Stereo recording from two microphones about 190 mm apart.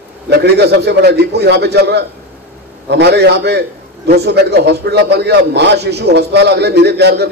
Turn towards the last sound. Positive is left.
turn(degrees=-60)  # may be behind; listen again after turning